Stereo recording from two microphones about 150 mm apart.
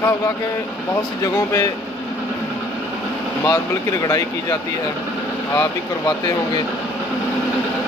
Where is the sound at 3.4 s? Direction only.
25° left (ahead or behind).